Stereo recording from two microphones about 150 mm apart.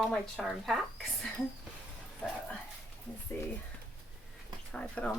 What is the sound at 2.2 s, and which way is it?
Speech, 5° left (ahead or behind).